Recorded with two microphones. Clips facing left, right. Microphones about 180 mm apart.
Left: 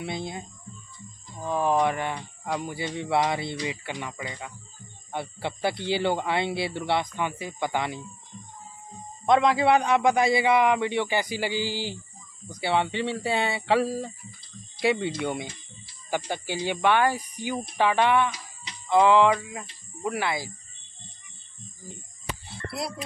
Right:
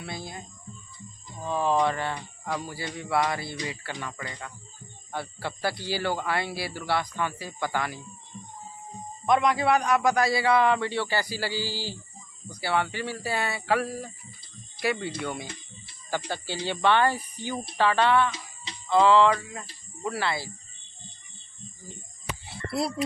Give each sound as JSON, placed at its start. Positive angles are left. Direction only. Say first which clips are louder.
{"t": 0.0, "sound": "speech", "louder": "left 5 dB", "side_deg": 20}
{"t": 1.4, "sound": "speech", "louder": "left 1 dB", "side_deg": 10}
{"t": 9.2, "sound": "speech", "louder": "left 2 dB", "side_deg": 25}
{"t": 16.3, "sound": "speech", "louder": "left 2 dB", "side_deg": 15}
{"t": 18.3, "sound": "music", "louder": "right 2 dB", "side_deg": -30}
{"t": 18.9, "sound": "speech", "louder": "left 1 dB", "side_deg": 15}